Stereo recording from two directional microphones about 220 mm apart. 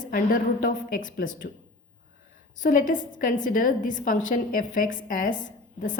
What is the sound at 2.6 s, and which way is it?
A woman's voice, 35° left (ahead or behind).